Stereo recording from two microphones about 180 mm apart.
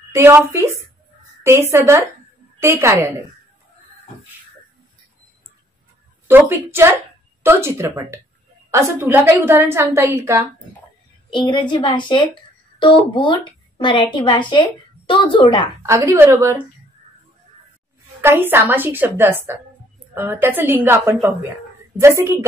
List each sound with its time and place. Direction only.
0.1 s a woman's voice: 15° right (ahead or behind)
6.2 s a woman's voice: 15° right (ahead or behind)
11.3 s a woman's voice: 25° left (ahead or behind)
15.8 s a woman's voice: 15° right (ahead or behind)
18.2 s a woman's voice: 10° right (ahead or behind)